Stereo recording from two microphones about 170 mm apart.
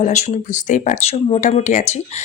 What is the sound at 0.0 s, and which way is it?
Speech, 40° left (ahead or behind).